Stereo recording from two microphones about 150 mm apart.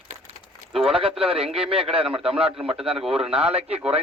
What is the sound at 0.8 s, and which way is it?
Speech, 40° right (ahead or behind).